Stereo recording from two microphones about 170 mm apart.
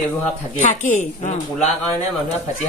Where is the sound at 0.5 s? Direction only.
50° left (ahead or behind).